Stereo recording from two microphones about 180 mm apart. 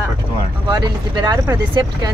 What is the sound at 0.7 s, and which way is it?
Speech, 25° right (ahead or behind).